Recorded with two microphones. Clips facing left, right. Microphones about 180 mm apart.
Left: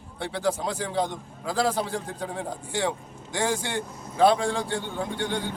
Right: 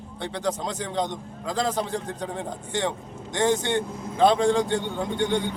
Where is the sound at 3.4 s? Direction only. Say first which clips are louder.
Right 4 dB; 25° right (ahead or behind).